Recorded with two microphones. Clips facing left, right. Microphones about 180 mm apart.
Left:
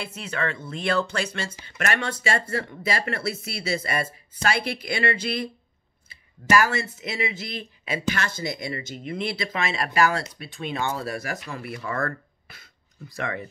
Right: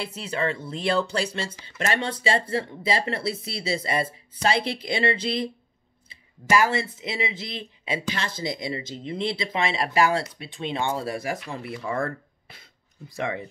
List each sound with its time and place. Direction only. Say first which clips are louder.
0.0 s speech: right 2 dB; 30° right (ahead or behind)